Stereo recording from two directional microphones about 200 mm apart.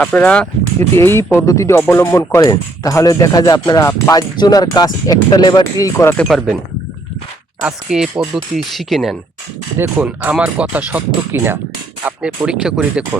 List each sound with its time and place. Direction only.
0.0 s speech: 5° left (ahead or behind)
7.6 s speech: 5° right (ahead or behind)